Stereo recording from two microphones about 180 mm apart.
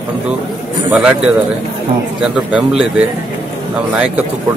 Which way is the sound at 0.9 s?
5° right (ahead or behind).